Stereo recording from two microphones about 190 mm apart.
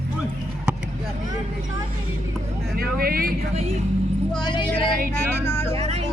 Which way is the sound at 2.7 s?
50° right (ahead or behind).